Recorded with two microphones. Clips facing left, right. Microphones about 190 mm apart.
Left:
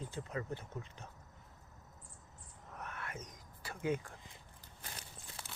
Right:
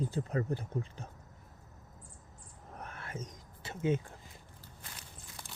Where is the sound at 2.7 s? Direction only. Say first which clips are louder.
Right 2 dB; 30° right (ahead or behind).